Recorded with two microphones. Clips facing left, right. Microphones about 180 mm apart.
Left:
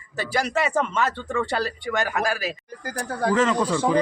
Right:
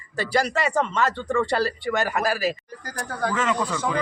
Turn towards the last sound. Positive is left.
turn(degrees=30)  # may be behind; listen again after turning